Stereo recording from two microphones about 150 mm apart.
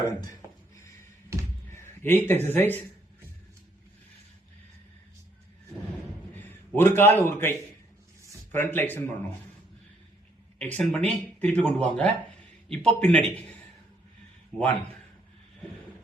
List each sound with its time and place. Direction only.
1.3 s a sound: 20° right (ahead or behind)
1.7 s a man's voice: 15° left (ahead or behind)
6.3 s a man's voice: 15° left (ahead or behind)
8.5 s speech: 15° left (ahead or behind)
10.6 s a man's voice: 10° left (ahead or behind)
14.5 s speech: 10° left (ahead or behind)